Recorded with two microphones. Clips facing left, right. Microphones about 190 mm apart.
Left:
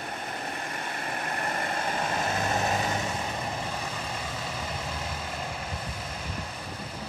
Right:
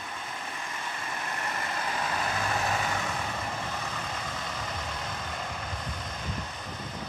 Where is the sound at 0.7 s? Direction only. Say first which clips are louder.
Left 3 dB; 50° left (ahead or behind); by 3.2 s 25° left (ahead or behind).